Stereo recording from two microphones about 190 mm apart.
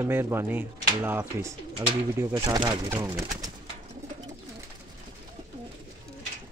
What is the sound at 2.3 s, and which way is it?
Speech, 25° right (ahead or behind).